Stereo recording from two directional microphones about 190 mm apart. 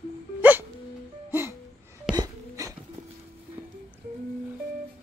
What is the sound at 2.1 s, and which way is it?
Wail, 15° right (ahead or behind).